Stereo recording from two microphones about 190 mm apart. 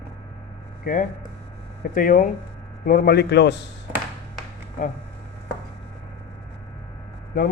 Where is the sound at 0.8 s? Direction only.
45° left (ahead or behind); by 3.6 s 65° left (ahead or behind).